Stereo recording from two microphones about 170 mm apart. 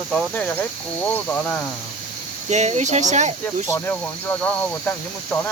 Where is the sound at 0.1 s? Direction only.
10° left (ahead or behind).